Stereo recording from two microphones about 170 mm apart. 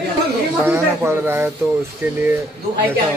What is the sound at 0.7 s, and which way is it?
Speech, 15° right (ahead or behind).